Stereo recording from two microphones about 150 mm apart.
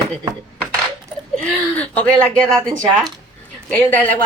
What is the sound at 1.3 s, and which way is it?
A woman's voice, 10° left (ahead or behind).